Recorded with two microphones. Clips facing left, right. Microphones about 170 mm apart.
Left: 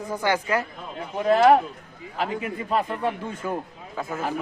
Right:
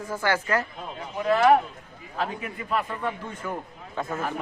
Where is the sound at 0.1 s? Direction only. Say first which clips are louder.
Left 1 dB; 15° left (ahead or behind).